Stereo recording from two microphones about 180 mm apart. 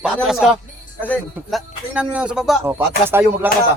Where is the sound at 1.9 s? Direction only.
5° right (ahead or behind).